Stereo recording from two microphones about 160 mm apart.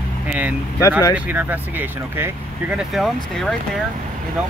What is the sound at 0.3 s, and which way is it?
Speech, 10° right (ahead or behind).